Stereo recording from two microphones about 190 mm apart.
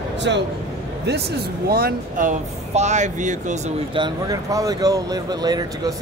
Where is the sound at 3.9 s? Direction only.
20° right (ahead or behind).